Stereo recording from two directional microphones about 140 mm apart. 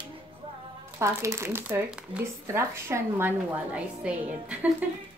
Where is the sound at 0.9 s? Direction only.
20° right (ahead or behind).